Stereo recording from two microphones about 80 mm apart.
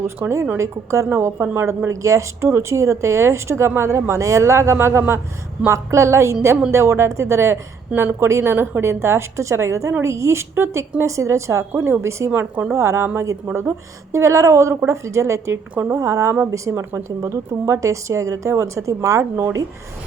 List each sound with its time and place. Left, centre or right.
0.2 s speech: right
12.3 s speech: right
12.7 s speech: right
15.7 s speech: right
16.0 s a woman's voice: right
16.5 s speech: right